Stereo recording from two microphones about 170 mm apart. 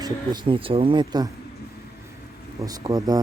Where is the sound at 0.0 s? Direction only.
30° right (ahead or behind).